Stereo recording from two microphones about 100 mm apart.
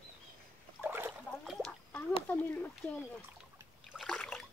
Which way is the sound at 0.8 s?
20° right (ahead or behind).